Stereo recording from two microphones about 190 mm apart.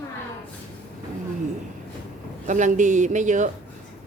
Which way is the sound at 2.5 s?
40° right (ahead or behind).